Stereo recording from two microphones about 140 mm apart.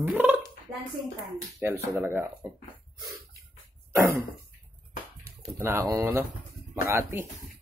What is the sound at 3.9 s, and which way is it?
Cough, 20° right (ahead or behind).